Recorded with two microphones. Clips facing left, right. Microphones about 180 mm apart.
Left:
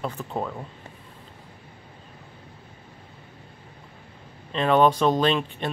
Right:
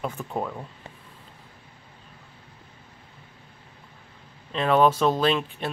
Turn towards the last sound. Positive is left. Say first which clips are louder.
# left 1 dB
turn(degrees=-5)  # may be behind; listen again after turning